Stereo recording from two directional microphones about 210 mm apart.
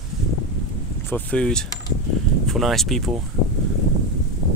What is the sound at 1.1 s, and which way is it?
Speech, 5° left (ahead or behind).